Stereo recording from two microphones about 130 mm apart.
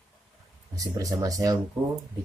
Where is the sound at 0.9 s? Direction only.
25° right (ahead or behind).